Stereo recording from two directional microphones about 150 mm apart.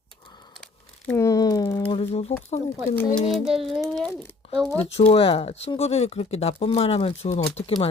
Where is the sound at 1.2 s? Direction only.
20° left (ahead or behind).